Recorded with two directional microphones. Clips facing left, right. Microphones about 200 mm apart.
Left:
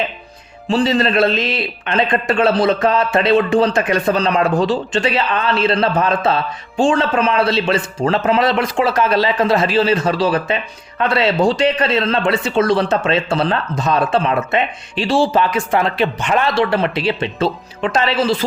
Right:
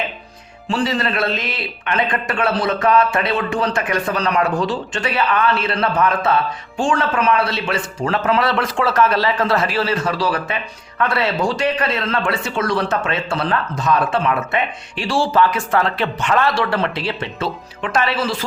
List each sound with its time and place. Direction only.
0.7 s a man's voice: 25° left (ahead or behind)